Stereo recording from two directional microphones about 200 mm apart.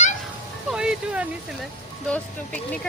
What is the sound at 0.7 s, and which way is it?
Speech, 5° right (ahead or behind).